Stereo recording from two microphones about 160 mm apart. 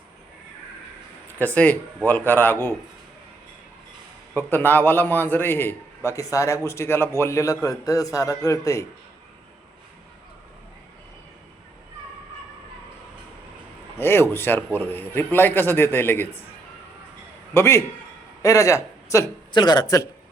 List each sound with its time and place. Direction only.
1.3 s a man's voice: 10° left (ahead or behind)
4.4 s a man's voice: 10° left (ahead or behind)
14.0 s a man's voice: 15° left (ahead or behind)
17.5 s a man's voice: 15° left (ahead or behind)